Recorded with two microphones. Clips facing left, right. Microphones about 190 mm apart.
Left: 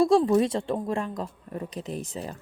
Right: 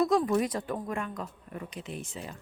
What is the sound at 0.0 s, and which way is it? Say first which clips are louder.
A woman's voice: left 5 dB; 30° left (ahead or behind).